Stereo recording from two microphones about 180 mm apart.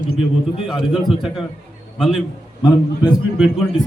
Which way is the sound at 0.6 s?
Centre (ahead or behind).